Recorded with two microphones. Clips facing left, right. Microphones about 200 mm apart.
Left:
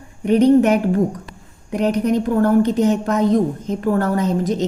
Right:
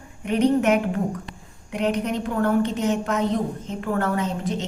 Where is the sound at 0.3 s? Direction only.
35° left (ahead or behind).